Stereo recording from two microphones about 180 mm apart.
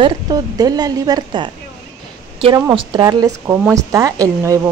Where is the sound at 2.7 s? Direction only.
20° right (ahead or behind).